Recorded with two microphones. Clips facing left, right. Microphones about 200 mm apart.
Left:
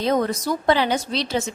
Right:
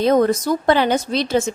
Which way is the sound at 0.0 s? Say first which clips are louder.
Right 6 dB; 50° right (ahead or behind).